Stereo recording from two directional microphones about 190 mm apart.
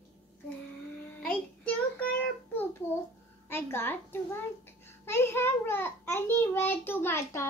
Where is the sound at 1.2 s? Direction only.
5° left (ahead or behind).